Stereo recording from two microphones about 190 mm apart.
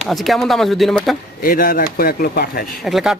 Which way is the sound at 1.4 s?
50° left (ahead or behind).